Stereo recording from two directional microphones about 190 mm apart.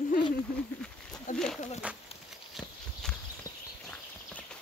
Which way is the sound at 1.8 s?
5° right (ahead or behind).